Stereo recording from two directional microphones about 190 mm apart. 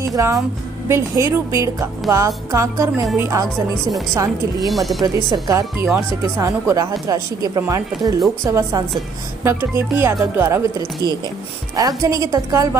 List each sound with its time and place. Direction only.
0.1 s speech: 15° right (ahead or behind)
4.6 s speech: centre (ahead or behind)
5.0 s speech: 20° right (ahead or behind)
12.0 s speech: 15° right (ahead or behind)